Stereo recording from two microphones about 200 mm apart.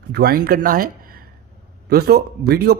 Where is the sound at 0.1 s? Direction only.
50° right (ahead or behind).